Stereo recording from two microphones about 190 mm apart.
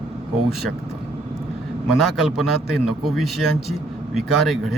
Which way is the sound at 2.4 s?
Centre (ahead or behind).